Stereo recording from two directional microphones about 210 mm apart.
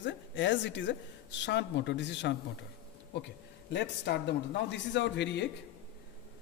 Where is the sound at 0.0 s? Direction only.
60° left (ahead or behind).